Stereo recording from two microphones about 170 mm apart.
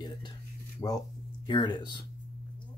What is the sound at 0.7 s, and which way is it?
Speech, 20° left (ahead or behind).